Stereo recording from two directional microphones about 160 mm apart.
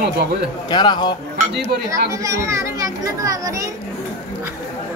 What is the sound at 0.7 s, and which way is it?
Speech, 30° left (ahead or behind).